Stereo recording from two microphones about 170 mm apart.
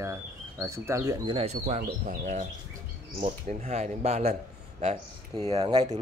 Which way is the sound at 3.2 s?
35° right (ahead or behind).